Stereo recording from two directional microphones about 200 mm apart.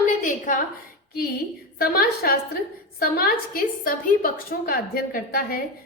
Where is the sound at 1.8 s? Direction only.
50° left (ahead or behind).